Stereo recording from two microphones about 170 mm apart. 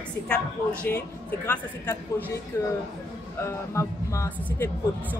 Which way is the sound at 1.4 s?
15° left (ahead or behind).